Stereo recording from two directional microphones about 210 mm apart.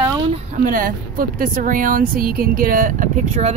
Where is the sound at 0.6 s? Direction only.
40° right (ahead or behind).